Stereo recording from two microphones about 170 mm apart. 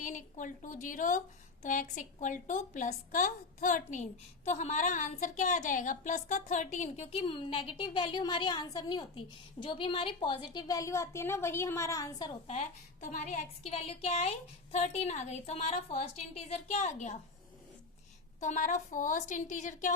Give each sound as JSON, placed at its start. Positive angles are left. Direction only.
{"t": 0.0, "sound": "a woman's voice", "side_deg": 50}
{"t": 12.5, "sound": "a woman's voice", "side_deg": 45}
{"t": 18.3, "sound": "a woman's voice", "side_deg": 45}